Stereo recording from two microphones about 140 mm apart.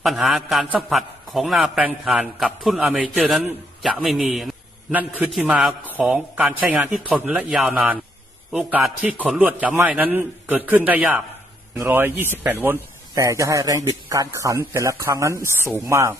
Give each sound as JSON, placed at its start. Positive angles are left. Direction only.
{"t": 0.0, "sound": "a man's voice", "side_deg": 0}